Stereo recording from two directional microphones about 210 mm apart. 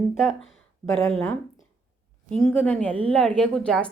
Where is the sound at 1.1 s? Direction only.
5° left (ahead or behind).